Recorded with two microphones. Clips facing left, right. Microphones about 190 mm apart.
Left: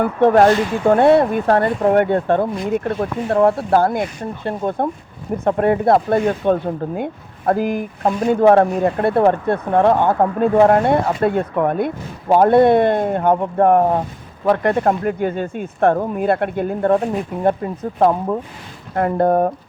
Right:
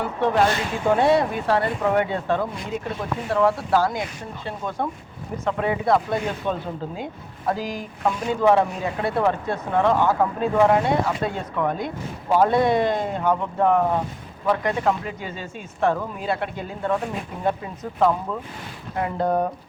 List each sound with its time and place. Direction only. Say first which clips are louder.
0.0 s speech: left 8 dB; 55° left (ahead or behind)